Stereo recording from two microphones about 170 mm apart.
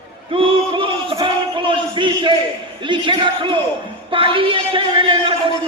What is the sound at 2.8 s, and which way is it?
A man's voice, 30° right (ahead or behind).